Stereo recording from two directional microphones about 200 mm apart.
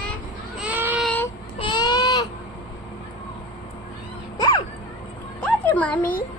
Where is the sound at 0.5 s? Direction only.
5° right (ahead or behind).